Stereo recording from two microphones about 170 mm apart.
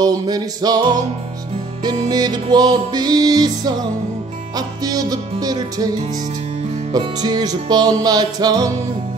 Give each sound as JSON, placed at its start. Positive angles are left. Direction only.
{"t": 0.0, "sound": "music", "side_deg": -20}